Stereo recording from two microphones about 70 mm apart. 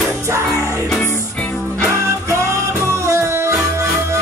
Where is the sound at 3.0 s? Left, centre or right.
Right.